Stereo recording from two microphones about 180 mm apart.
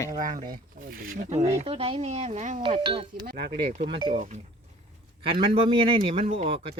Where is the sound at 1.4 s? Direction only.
35° right (ahead or behind).